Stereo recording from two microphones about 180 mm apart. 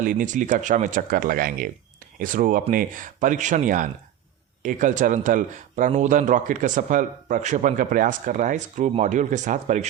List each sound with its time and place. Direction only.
0.0 s speech: 45° right (ahead or behind)